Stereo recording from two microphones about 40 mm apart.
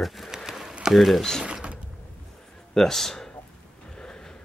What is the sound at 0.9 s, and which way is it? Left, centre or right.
Speech, centre.